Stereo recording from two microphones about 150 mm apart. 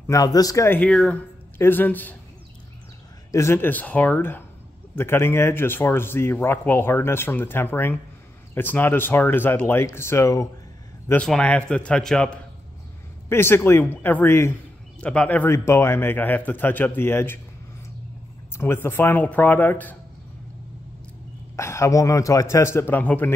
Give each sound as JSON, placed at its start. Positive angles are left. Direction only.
{"t": 0.0, "sound": "a man's voice", "side_deg": 20}
{"t": 0.8, "sound": "speech", "side_deg": 5}
{"t": 3.3, "sound": "speech", "side_deg": 20}
{"t": 11.1, "sound": "speech", "side_deg": 5}
{"t": 13.3, "sound": "speech", "side_deg": 15}
{"t": 18.6, "sound": "speech", "side_deg": 15}
{"t": 21.5, "sound": "a man's voice", "side_deg": 20}